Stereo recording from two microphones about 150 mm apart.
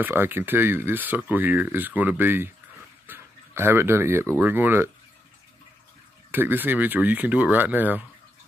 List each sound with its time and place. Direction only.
0.0 s speech: 15° right (ahead or behind)
6.3 s speech: 15° right (ahead or behind)